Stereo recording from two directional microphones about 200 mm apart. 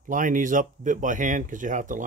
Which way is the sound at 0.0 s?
40° right (ahead or behind).